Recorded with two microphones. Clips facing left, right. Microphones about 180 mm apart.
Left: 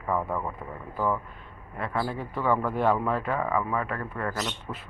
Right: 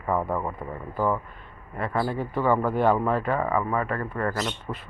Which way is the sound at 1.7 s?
5° right (ahead or behind).